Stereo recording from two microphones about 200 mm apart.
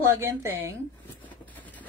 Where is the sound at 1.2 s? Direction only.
10° left (ahead or behind).